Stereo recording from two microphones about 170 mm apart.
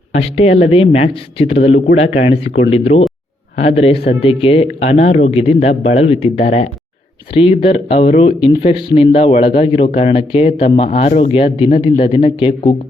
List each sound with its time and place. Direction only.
0.1 s speech: 35° left (ahead or behind)